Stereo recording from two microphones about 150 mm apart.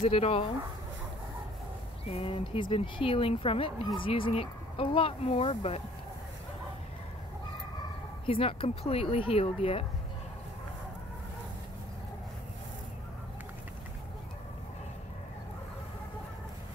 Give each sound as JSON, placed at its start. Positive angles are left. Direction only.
{"t": 0.0, "sound": "speech", "side_deg": 40}
{"t": 2.0, "sound": "speech", "side_deg": 40}
{"t": 8.3, "sound": "speech", "side_deg": 40}